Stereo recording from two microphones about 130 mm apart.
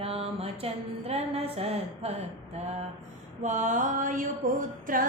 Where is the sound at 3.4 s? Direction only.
70° right (ahead or behind); by 4.3 s 90° right.